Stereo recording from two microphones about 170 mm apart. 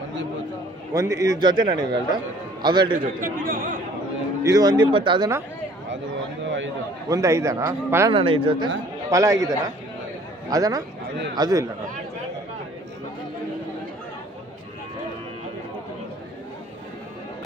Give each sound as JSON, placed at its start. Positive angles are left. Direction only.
{"t": 0.9, "sound": "a man's voice", "side_deg": -20}
{"t": 3.2, "sound": "speech", "side_deg": -55}
{"t": 4.4, "sound": "a man's voice", "side_deg": -20}
{"t": 7.1, "sound": "speech", "side_deg": -20}
{"t": 8.1, "sound": "speech", "side_deg": -30}
{"t": 9.0, "sound": "a man's voice", "side_deg": -20}